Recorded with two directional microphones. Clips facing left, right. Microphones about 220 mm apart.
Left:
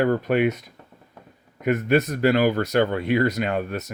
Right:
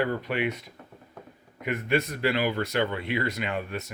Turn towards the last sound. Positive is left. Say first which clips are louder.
# left 6 dB
turn(degrees=40)  # may be behind; listen again after turning